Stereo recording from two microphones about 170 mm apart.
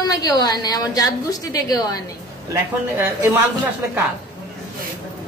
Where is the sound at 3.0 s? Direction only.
15° right (ahead or behind).